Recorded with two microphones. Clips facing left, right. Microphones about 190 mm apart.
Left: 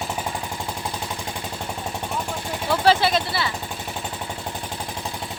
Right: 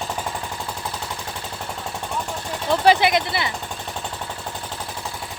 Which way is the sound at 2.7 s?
15° right (ahead or behind).